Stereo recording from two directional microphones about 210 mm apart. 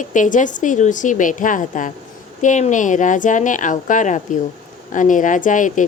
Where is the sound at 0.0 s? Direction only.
35° left (ahead or behind).